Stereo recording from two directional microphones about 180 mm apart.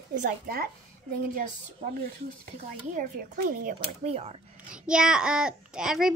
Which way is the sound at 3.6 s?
40° right (ahead or behind).